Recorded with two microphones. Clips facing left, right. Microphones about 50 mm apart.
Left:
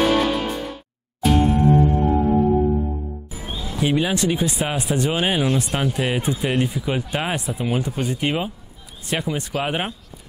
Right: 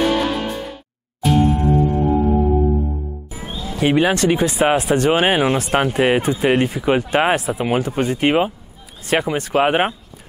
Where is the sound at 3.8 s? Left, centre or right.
Right.